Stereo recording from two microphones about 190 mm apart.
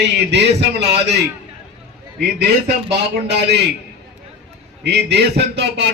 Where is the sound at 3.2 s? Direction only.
60° right (ahead or behind).